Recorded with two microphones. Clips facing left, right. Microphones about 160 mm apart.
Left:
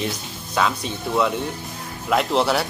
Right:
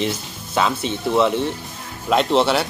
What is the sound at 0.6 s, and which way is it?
Speech, 25° right (ahead or behind).